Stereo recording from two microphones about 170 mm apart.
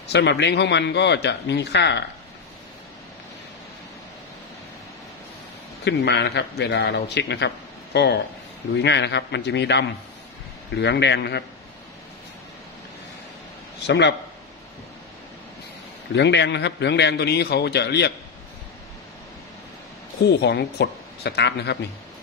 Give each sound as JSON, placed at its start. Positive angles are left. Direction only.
{"t": 0.1, "sound": "a man's voice", "side_deg": 90}
{"t": 5.9, "sound": "a man's voice", "side_deg": 90}
{"t": 8.7, "sound": "a man's voice", "side_deg": 90}
{"t": 13.8, "sound": "a man's voice", "side_deg": 90}
{"t": 16.2, "sound": "a man's voice", "side_deg": 90}
{"t": 20.2, "sound": "speech", "side_deg": 80}